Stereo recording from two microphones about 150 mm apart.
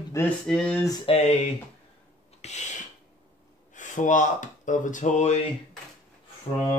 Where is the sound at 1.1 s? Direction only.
40° left (ahead or behind).